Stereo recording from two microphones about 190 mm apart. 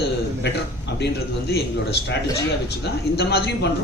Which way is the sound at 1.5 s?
60° left (ahead or behind).